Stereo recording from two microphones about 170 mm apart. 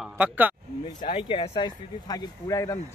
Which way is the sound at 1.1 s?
35° left (ahead or behind).